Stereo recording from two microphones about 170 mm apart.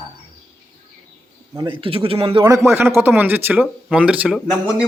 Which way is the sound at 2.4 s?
15° right (ahead or behind).